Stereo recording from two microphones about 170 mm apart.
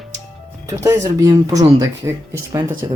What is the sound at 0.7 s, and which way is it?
Speech, 20° right (ahead or behind).